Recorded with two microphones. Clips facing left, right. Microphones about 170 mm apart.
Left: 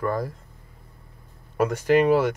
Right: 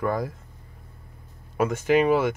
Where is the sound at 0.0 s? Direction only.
Centre (ahead or behind).